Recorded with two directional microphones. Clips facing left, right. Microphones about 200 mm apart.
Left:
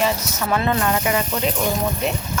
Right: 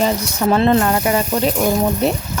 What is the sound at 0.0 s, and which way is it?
Speech, 30° right (ahead or behind).